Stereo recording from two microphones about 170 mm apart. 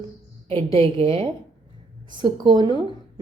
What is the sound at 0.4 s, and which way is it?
A woman's voice, 35° right (ahead or behind).